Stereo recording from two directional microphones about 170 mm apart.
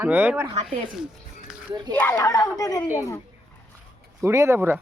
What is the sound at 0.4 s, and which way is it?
Speech, 35° right (ahead or behind).